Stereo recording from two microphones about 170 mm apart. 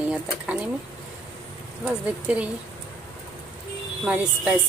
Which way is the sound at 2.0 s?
5° right (ahead or behind).